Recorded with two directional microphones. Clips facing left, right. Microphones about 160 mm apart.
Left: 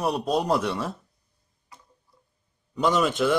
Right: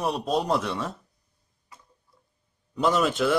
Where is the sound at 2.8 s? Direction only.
Centre (ahead or behind).